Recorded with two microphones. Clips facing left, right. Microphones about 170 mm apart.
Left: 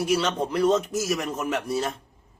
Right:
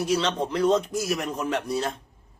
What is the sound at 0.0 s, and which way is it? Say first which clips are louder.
A man's voice: left 1 dB; 5° left (ahead or behind).